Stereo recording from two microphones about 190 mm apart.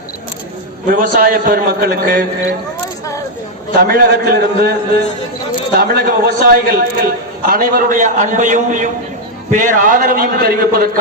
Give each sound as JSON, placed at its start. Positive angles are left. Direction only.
{"t": 0.9, "sound": "a man's voice", "side_deg": -45}
{"t": 3.8, "sound": "a man's voice", "side_deg": -50}
{"t": 5.7, "sound": "a man's voice", "side_deg": -50}